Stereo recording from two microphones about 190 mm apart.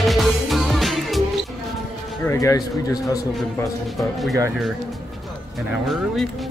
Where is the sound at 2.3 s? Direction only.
15° left (ahead or behind).